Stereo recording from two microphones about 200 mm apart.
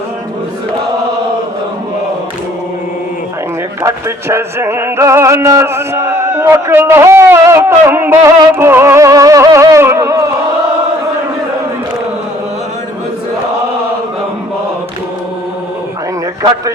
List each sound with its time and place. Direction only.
3.8 s music: 15° right (ahead or behind)
16.4 s music: 15° right (ahead or behind)